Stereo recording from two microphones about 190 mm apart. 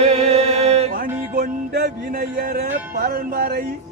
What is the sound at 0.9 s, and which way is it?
Music, 50° right (ahead or behind).